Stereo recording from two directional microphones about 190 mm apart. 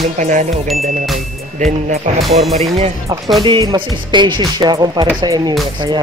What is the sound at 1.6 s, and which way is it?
Speech, 40° right (ahead or behind).